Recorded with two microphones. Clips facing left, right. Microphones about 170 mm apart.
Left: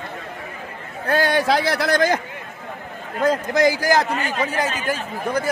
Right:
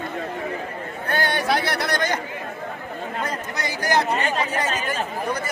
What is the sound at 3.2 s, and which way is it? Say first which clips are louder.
Speech: left 16 dB; 90° left.